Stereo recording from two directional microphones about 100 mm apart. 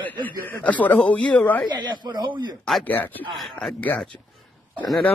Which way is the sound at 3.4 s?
Centre (ahead or behind).